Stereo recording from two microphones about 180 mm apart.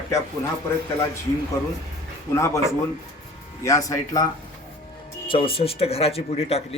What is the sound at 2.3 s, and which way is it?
Speech, 15° left (ahead or behind).